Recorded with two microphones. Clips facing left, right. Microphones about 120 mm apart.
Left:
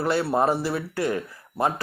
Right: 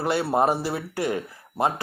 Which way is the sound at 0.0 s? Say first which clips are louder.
Even; 20° right (ahead or behind).